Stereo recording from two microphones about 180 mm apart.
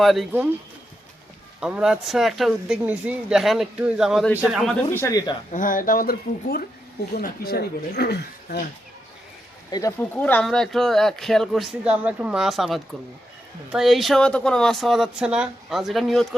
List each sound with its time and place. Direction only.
0.0 s speech: centre (ahead or behind)
1.6 s speech: 5° right (ahead or behind)
4.9 s speech: 15° left (ahead or behind)
5.5 s speech: 45° left (ahead or behind)
10.0 s speech: 10° left (ahead or behind)